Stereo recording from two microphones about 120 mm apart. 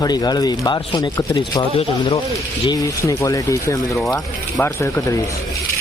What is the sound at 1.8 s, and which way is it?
Speech, 55° left (ahead or behind).